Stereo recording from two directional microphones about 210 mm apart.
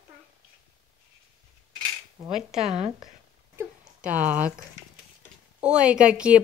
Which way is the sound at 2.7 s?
30° right (ahead or behind).